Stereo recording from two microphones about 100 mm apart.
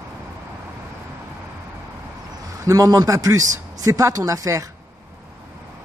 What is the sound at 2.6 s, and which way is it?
A man's voice, 35° right (ahead or behind).